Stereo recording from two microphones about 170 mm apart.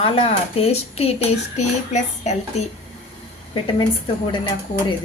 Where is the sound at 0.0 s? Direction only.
35° left (ahead or behind).